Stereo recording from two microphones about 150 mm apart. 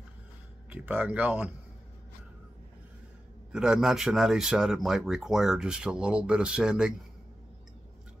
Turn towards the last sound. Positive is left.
turn(degrees=-5)  # may be behind; listen again after turning